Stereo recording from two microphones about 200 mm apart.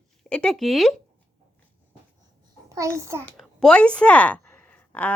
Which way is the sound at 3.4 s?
5° left (ahead or behind).